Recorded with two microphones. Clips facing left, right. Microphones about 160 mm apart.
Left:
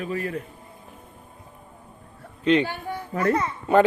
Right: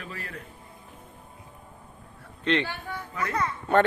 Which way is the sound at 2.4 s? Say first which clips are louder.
Left 6 dB; 10° left (ahead or behind).